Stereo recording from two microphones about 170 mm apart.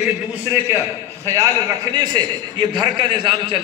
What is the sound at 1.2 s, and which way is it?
A man's voice, 20° right (ahead or behind).